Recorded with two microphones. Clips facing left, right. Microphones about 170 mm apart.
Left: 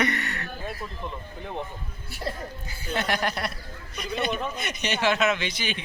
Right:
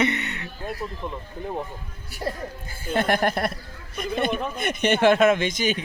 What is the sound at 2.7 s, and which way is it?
Speech, 50° right (ahead or behind).